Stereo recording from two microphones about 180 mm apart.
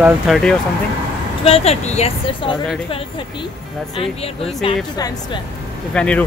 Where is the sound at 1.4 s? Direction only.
35° left (ahead or behind).